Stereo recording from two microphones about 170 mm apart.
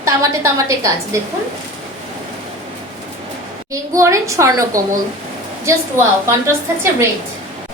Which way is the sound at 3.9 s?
20° right (ahead or behind).